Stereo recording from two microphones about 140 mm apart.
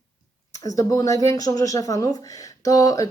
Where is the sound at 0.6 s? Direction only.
25° left (ahead or behind).